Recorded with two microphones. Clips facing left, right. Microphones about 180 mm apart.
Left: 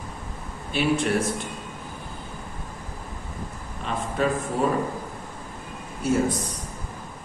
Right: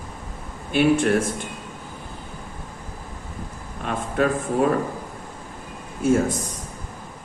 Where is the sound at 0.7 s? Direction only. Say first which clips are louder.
Right 5 dB; 50° right (ahead or behind).